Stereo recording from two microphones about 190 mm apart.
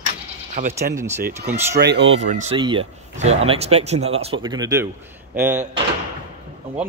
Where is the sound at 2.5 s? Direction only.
25° right (ahead or behind); by 5.6 s 10° right (ahead or behind).